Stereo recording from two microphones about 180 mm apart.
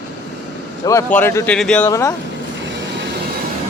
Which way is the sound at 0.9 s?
15° left (ahead or behind).